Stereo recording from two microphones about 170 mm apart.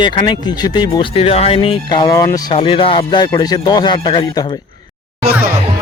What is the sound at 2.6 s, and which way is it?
Speech, 30° left (ahead or behind).